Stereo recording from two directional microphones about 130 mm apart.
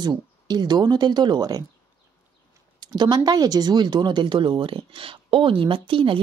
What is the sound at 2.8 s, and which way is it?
Speech, 35° right (ahead or behind).